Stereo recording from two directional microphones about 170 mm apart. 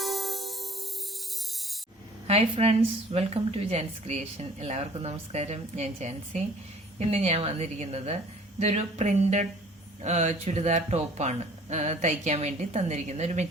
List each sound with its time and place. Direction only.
0.0 s music: centre (ahead or behind)
2.2 s a woman's voice: 35° right (ahead or behind)